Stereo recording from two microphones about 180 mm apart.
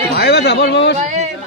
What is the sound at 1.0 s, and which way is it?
Speech, 40° right (ahead or behind).